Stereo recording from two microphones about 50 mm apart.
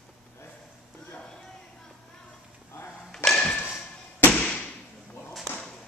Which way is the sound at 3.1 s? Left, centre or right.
Centre.